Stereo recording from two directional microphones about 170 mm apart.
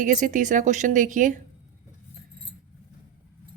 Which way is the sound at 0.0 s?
50° right (ahead or behind).